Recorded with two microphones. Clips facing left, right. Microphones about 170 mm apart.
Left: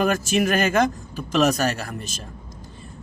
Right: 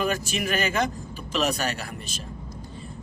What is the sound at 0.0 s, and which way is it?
Speech, 50° left (ahead or behind).